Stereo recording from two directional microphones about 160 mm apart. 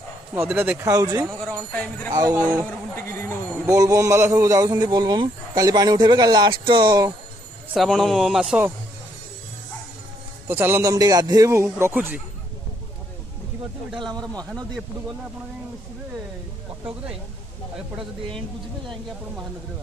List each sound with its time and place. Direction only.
0.6 s a man's voice: 15° right (ahead or behind)
1.4 s speech: 5° left (ahead or behind)
3.6 s a man's voice: 20° right (ahead or behind)
7.7 s a man's voice: centre (ahead or behind)
10.5 s a man's voice: 15° right (ahead or behind)
13.9 s a man's voice: 25° right (ahead or behind)